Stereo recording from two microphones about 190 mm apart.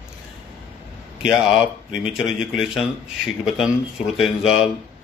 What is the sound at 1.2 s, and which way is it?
Speech, centre (ahead or behind).